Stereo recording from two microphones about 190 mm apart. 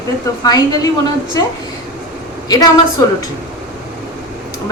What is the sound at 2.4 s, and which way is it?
Speech, 20° left (ahead or behind).